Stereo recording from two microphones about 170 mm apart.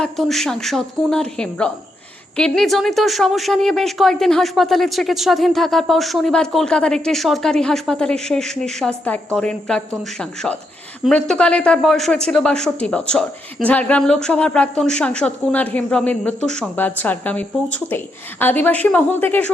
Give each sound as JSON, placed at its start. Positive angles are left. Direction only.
{"t": 0.0, "sound": "a woman's voice", "side_deg": 0}